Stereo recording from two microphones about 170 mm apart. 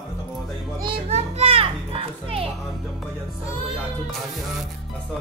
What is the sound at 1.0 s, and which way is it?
Children playing, 40° right (ahead or behind).